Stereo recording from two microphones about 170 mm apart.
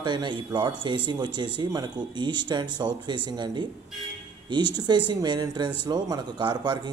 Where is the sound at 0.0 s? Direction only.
25° right (ahead or behind).